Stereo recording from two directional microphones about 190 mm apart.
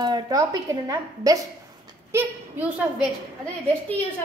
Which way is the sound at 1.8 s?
10° right (ahead or behind).